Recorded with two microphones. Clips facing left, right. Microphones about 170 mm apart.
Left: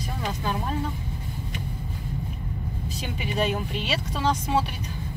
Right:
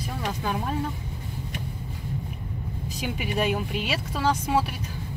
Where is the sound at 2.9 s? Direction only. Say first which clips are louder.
Even; 10° right (ahead or behind).